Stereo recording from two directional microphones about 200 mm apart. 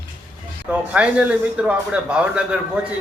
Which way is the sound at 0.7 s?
5° right (ahead or behind).